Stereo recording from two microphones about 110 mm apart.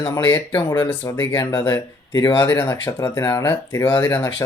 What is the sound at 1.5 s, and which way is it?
Speech, 30° left (ahead or behind).